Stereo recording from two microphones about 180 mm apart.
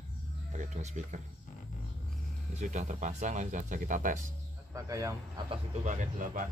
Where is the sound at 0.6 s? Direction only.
40° right (ahead or behind).